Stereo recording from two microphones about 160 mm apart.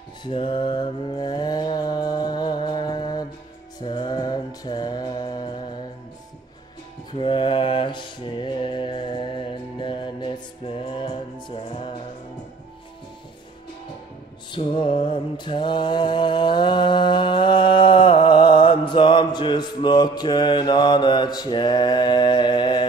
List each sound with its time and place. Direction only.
0.2 s mantra: 30° left (ahead or behind)
7.1 s mantra: 30° left (ahead or behind)
10.9 s music: 30° left (ahead or behind)
14.7 s mantra: 30° left (ahead or behind)